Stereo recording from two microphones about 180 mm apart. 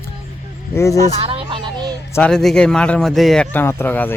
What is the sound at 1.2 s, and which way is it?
Speech, 30° right (ahead or behind).